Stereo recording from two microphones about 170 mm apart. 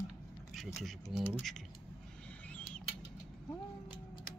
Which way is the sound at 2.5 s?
5° left (ahead or behind).